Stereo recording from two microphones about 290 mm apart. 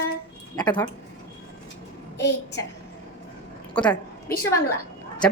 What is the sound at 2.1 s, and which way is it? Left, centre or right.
Speech, left.